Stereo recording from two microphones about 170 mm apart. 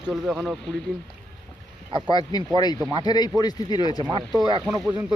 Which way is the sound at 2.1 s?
25° left (ahead or behind).